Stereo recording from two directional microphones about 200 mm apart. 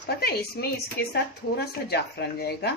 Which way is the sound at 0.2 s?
50° left (ahead or behind).